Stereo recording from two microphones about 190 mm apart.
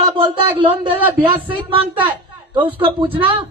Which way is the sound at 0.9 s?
10° right (ahead or behind).